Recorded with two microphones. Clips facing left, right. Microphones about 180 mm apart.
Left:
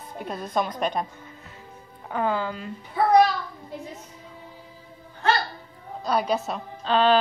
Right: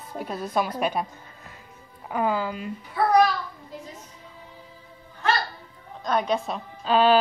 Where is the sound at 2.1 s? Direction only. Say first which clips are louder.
Right 1 dB; 10° right (ahead or behind).